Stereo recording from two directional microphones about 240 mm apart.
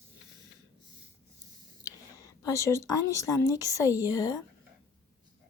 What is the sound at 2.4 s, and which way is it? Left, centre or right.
A woman's voice, centre.